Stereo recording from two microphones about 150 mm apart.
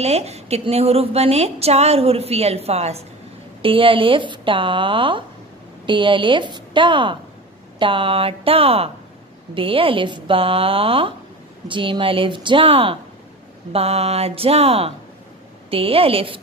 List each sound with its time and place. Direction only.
0.0 s a woman's voice: 45° right (ahead or behind)